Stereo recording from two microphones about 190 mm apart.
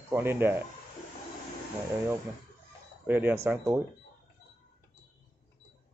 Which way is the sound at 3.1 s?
10° right (ahead or behind).